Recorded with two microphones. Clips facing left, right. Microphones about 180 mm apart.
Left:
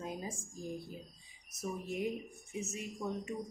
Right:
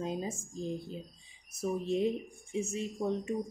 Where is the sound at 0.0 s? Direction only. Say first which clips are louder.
Right 6 dB; 25° right (ahead or behind).